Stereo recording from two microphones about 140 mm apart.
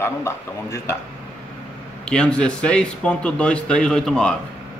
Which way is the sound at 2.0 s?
5° left (ahead or behind).